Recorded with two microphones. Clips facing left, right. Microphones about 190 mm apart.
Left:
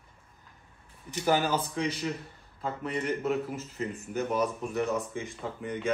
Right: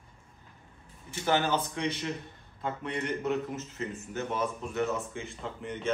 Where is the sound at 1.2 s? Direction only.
10° left (ahead or behind).